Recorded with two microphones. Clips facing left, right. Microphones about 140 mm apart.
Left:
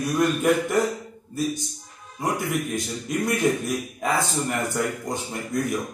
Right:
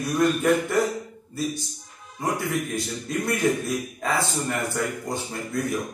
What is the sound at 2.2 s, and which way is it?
A man's voice, 15° left (ahead or behind).